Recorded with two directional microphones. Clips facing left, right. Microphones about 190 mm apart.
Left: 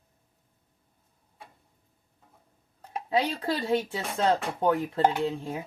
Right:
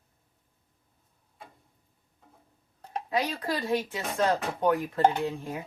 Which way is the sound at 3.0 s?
25° left (ahead or behind).